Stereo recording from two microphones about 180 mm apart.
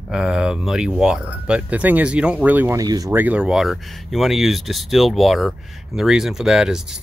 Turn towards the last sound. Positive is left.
turn(degrees=-5)  # may be behind; listen again after turning